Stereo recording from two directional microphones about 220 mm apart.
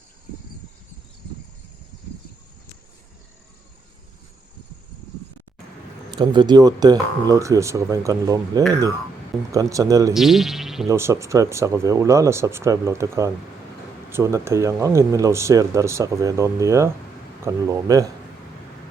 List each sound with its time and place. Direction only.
6.1 s speech: 20° right (ahead or behind)
10.2 s speech: centre (ahead or behind)
10.8 s speech: 10° right (ahead or behind)